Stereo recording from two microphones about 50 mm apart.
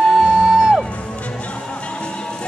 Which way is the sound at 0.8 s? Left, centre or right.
Left.